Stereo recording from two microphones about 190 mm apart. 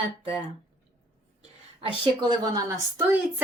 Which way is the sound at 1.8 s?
25° right (ahead or behind).